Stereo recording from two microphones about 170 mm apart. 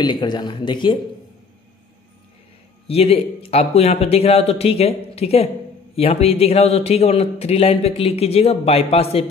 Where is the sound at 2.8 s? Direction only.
35° left (ahead or behind).